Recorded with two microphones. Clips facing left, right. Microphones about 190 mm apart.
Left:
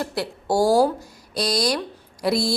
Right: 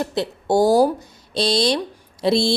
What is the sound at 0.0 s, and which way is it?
A woman's voice, 20° right (ahead or behind).